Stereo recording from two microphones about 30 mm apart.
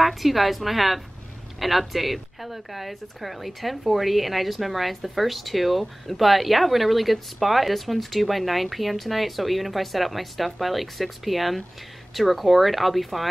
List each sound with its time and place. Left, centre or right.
0.0 s a woman's voice: centre